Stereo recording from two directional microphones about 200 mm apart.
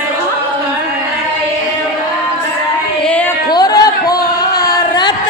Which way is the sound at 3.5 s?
20° left (ahead or behind).